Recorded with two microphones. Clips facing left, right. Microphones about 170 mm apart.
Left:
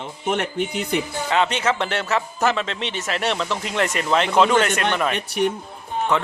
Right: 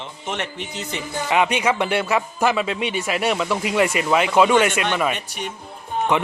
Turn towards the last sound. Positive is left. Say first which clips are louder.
# right 2 dB
turn(degrees=-15)  # may be behind; listen again after turning